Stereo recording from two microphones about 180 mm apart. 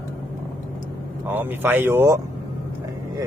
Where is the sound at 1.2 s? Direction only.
10° right (ahead or behind).